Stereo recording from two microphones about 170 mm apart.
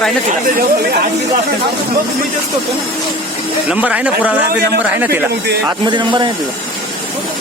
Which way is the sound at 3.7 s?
5° right (ahead or behind).